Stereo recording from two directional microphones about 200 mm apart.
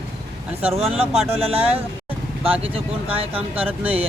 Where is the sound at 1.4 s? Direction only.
30° right (ahead or behind).